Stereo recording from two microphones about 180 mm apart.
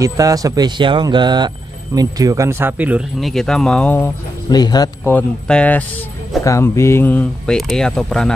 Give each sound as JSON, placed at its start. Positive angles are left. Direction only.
{"t": 0.0, "sound": "speech", "side_deg": -20}
{"t": 4.5, "sound": "a man's voice", "side_deg": 20}
{"t": 5.1, "sound": "speech", "side_deg": 10}